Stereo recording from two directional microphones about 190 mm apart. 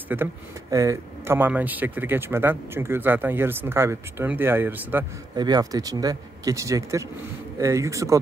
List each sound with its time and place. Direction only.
0.1 s speech: 15° right (ahead or behind)
5.3 s speech: 20° right (ahead or behind)